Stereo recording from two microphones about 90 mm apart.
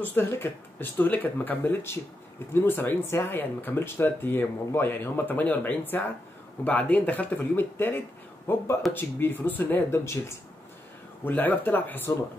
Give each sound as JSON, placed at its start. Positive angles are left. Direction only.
{"t": 0.0, "sound": "speech", "side_deg": 25}